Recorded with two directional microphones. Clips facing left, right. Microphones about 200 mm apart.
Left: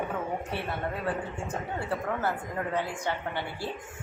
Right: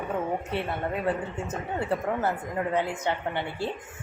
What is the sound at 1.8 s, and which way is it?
A woman's voice, 20° right (ahead or behind).